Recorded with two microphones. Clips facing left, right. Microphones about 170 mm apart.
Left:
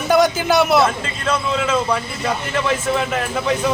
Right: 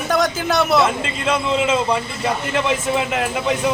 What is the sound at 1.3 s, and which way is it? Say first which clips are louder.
A man's voice: right 1 dB; 25° right (ahead or behind).